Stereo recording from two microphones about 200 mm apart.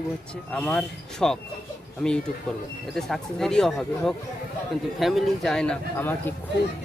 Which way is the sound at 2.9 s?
Centre (ahead or behind).